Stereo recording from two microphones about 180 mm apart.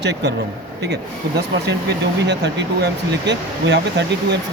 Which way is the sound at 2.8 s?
75° right (ahead or behind).